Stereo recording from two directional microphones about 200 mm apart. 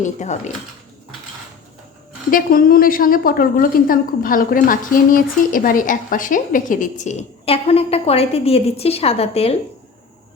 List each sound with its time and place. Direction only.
0.0 s a woman's voice: 35° left (ahead or behind)
2.3 s a woman's voice: 45° left (ahead or behind); by 9.6 s 30° left (ahead or behind)